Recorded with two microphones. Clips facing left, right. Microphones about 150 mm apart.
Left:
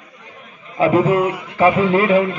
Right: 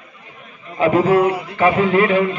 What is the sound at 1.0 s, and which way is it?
Speech, 35° right (ahead or behind).